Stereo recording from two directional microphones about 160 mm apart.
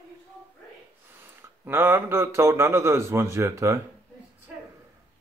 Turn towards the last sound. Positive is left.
turn(degrees=-15)  # may be behind; listen again after turning